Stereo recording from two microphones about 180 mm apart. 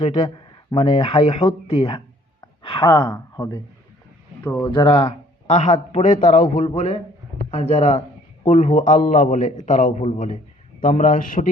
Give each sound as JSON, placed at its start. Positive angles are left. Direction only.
{"t": 0.0, "sound": "speech", "side_deg": 35}
{"t": 4.4, "sound": "speech", "side_deg": 10}
{"t": 4.7, "sound": "speech", "side_deg": 25}
{"t": 5.5, "sound": "a man's voice", "side_deg": 40}
{"t": 8.4, "sound": "a man's voice", "side_deg": 45}